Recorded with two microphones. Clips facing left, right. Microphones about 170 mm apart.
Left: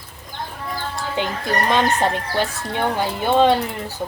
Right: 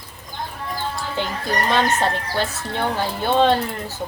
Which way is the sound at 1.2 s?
15° left (ahead or behind).